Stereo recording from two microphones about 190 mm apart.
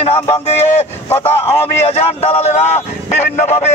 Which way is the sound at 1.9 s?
30° left (ahead or behind).